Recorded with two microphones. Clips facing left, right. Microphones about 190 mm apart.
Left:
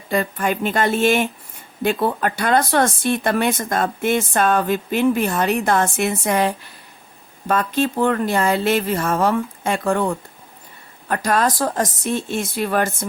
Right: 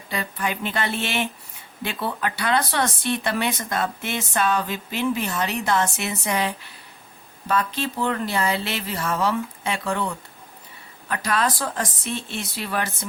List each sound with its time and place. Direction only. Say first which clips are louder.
0.1 s speech: left 7 dB; 45° left (ahead or behind)